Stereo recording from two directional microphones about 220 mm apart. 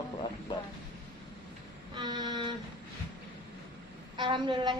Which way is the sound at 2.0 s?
20° right (ahead or behind).